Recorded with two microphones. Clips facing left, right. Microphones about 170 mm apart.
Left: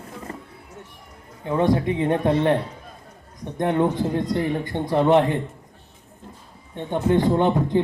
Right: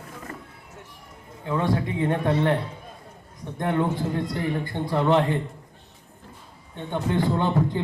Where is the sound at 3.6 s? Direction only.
25° left (ahead or behind).